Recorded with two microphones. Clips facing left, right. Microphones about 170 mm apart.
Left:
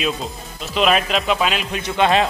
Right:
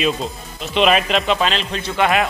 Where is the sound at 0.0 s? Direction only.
Centre (ahead or behind); by 2.0 s 15° left (ahead or behind).